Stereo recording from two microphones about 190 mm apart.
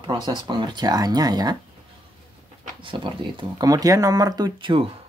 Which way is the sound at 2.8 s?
25° right (ahead or behind).